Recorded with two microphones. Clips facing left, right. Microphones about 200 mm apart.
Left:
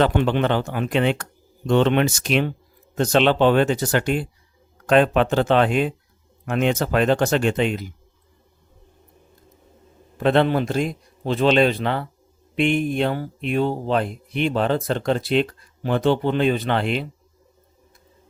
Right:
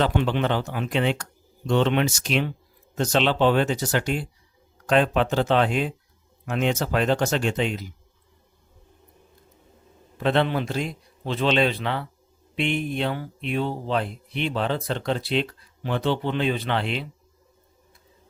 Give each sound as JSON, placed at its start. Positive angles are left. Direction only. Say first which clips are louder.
{"t": 0.0, "sound": "speech", "louder": "left 4 dB", "side_deg": 55}
{"t": 10.2, "sound": "speech", "louder": "left 4 dB", "side_deg": 50}